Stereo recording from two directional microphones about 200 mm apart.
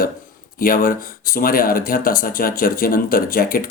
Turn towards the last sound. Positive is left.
turn(degrees=45)  # may be behind; listen again after turning